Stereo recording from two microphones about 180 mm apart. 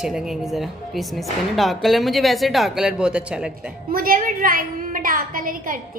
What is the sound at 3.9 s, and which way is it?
A woman's voice, 55° right (ahead or behind).